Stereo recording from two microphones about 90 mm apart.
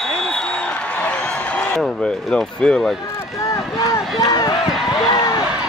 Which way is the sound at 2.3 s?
10° left (ahead or behind).